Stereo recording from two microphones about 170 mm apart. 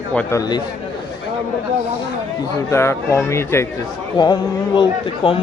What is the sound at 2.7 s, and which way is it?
Speech, 15° left (ahead or behind).